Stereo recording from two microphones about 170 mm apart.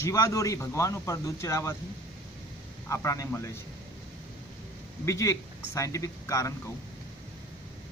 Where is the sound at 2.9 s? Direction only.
15° left (ahead or behind).